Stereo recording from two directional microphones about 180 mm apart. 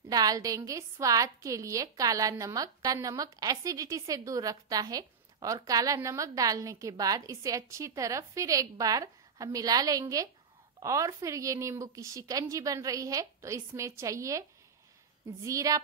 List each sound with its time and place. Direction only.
0.1 s a woman's voice: 20° right (ahead or behind)
15.4 s a woman's voice: 20° right (ahead or behind)